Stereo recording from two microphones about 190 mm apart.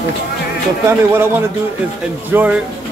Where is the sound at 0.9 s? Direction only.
10° right (ahead or behind).